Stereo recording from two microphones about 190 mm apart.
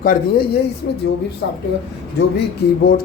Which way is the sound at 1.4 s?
65° left (ahead or behind).